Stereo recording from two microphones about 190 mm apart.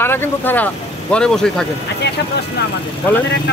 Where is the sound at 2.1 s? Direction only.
60° left (ahead or behind).